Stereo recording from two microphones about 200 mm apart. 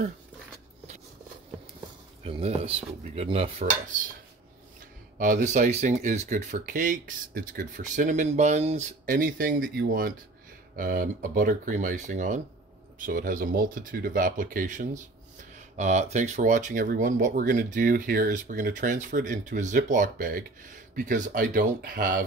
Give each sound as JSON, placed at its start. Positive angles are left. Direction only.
{"t": 2.2, "sound": "speech", "side_deg": -30}
{"t": 5.2, "sound": "speech", "side_deg": -40}